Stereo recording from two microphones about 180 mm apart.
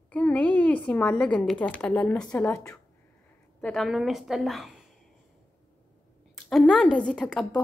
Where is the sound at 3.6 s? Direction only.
Centre (ahead or behind).